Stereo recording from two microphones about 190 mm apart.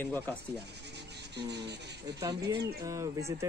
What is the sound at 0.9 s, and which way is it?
Music, 65° right (ahead or behind).